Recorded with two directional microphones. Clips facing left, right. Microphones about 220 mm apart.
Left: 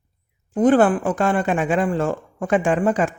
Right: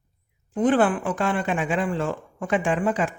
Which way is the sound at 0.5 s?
40° left (ahead or behind).